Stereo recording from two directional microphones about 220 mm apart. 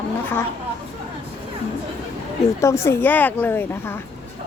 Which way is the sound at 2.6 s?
10° left (ahead or behind).